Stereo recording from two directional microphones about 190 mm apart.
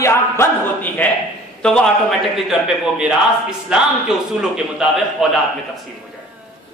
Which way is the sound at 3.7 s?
5° right (ahead or behind).